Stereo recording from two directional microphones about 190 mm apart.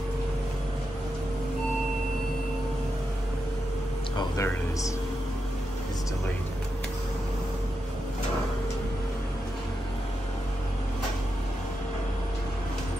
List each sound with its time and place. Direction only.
4.2 s speech: 15° left (ahead or behind)